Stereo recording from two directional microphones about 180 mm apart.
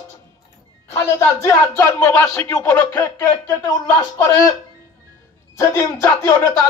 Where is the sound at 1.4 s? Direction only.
15° left (ahead or behind).